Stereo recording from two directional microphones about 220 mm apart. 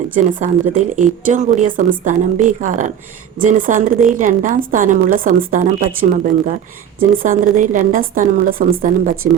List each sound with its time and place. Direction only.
0.1 s speech: 35° right (ahead or behind)